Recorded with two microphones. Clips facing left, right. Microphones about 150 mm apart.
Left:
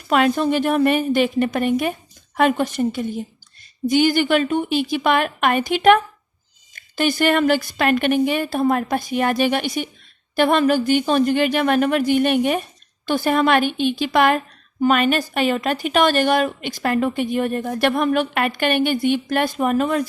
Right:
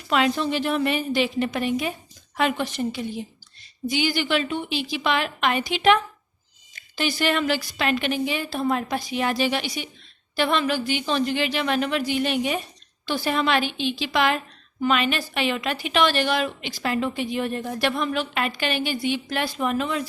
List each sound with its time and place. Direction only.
0.1 s a woman's voice: 50° left (ahead or behind)